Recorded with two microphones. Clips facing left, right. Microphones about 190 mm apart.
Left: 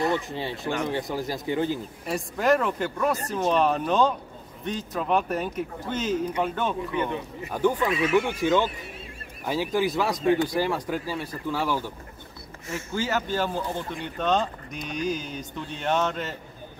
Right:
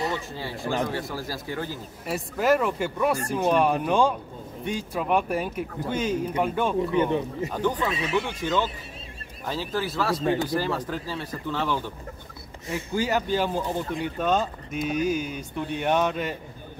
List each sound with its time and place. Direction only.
0.3 s speech: 20° left (ahead or behind)
2.0 s speech: 5° right (ahead or behind)
6.9 s speech: 30° right (ahead or behind)
7.5 s speech: 10° left (ahead or behind)
12.6 s speech: 15° right (ahead or behind)